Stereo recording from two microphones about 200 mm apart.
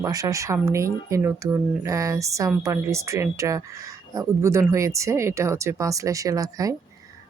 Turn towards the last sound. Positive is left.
turn(degrees=-15)  # may be behind; listen again after turning